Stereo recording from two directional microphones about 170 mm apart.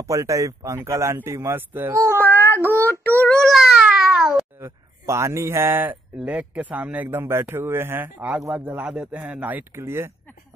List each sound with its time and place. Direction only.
0.0 s speech: 20° right (ahead or behind)
2.5 s child singing: 15° right (ahead or behind)
3.3 s a sound: centre (ahead or behind)
4.6 s speech: 15° right (ahead or behind)